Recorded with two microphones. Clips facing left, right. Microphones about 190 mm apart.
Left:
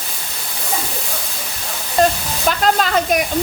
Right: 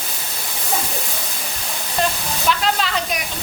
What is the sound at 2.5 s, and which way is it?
Speech, 45° left (ahead or behind).